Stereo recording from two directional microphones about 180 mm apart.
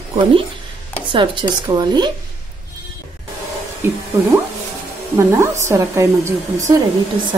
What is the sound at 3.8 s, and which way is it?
Speech, 15° right (ahead or behind).